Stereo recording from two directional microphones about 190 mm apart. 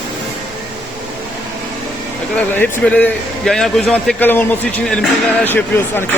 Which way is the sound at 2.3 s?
5° left (ahead or behind).